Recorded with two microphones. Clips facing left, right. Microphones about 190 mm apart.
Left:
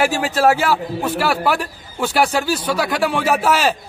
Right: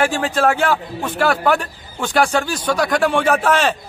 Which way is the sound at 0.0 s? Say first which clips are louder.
Left 1 dB; 5° left (ahead or behind).